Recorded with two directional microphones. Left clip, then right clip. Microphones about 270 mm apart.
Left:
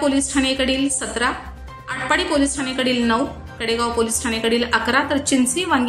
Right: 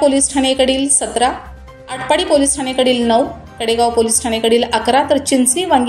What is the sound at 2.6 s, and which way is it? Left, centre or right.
A woman's voice, centre.